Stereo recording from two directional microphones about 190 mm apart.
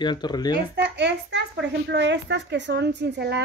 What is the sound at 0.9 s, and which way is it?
A child's voice, 65° right (ahead or behind).